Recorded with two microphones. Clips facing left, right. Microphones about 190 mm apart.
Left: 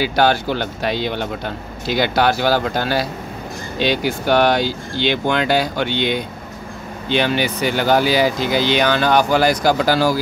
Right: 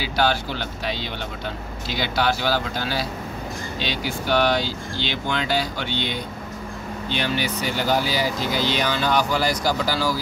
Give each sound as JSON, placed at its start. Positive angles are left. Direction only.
{"t": 0.0, "sound": "speech", "side_deg": 55}